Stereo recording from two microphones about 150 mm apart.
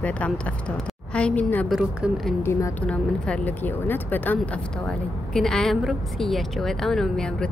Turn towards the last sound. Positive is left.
turn(degrees=5)  # may be behind; listen again after turning